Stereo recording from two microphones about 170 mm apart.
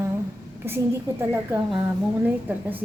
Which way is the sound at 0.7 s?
15° right (ahead or behind).